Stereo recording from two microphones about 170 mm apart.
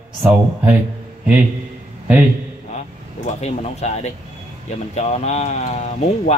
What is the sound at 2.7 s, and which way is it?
A man's voice, 40° left (ahead or behind).